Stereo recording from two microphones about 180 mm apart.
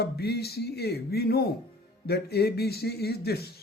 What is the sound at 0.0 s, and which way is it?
Speech, 65° left (ahead or behind).